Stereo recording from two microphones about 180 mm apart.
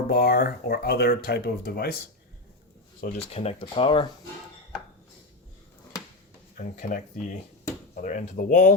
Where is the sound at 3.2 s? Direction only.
35° left (ahead or behind).